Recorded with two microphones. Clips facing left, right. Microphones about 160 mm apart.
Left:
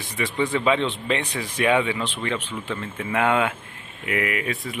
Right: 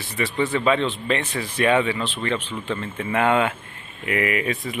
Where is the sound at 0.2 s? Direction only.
15° left (ahead or behind).